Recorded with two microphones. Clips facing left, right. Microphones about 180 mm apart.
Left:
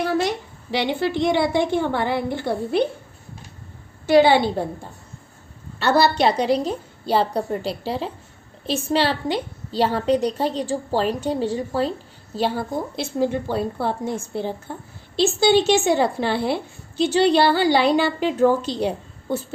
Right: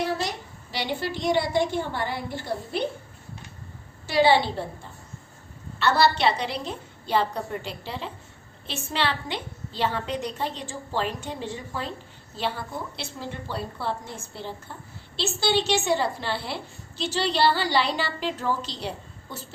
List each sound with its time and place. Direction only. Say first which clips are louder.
0.7 s a woman's voice: left 7 dB; 60° left (ahead or behind)
4.1 s a woman's voice: left 6 dB; 50° left (ahead or behind)